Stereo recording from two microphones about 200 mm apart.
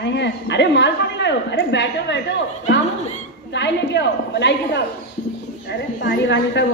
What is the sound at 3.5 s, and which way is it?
A man's voice, 60° left (ahead or behind).